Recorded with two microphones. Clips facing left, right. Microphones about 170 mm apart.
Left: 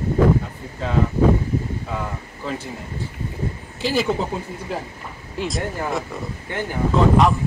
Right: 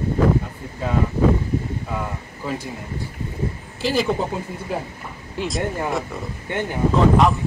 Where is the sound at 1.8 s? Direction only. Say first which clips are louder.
Even; 5° right (ahead or behind).